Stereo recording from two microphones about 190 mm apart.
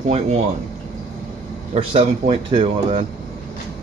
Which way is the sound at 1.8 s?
30° right (ahead or behind).